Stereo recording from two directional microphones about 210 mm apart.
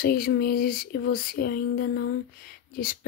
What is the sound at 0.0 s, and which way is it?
Speech, 45° left (ahead or behind).